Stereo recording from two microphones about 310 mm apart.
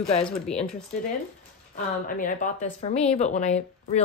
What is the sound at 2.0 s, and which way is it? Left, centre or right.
Speech, left.